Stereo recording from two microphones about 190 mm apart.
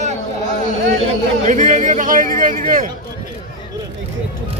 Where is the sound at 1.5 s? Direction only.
40° right (ahead or behind).